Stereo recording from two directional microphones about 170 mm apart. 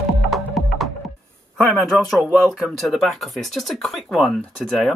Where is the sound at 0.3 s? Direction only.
Centre (ahead or behind).